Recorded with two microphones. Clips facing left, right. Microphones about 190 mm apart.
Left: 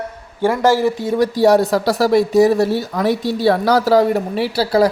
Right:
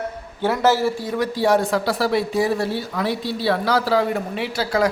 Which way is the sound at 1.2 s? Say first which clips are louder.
Left 6 dB; 40° left (ahead or behind).